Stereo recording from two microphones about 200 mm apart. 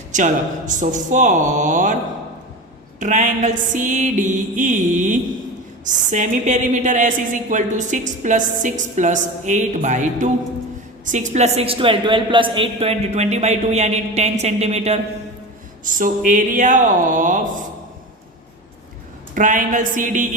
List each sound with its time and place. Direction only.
0.1 s a woman's voice: 40° right (ahead or behind)
3.0 s a woman's voice: 40° right (ahead or behind)
19.3 s a woman's voice: 40° right (ahead or behind)